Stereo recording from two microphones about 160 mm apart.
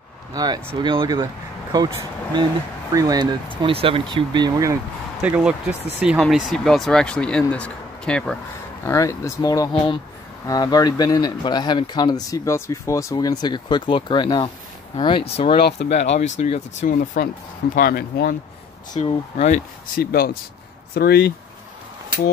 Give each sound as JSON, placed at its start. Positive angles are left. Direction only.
{"t": 0.3, "sound": "speech", "side_deg": -25}
{"t": 5.2, "sound": "speech", "side_deg": -10}
{"t": 8.8, "sound": "speech", "side_deg": 20}
{"t": 17.7, "sound": "speech", "side_deg": 70}
{"t": 18.9, "sound": "speech", "side_deg": 40}
{"t": 20.0, "sound": "speech", "side_deg": 70}